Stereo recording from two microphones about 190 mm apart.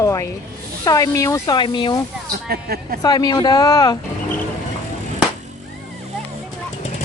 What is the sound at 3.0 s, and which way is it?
Speech, 20° left (ahead or behind).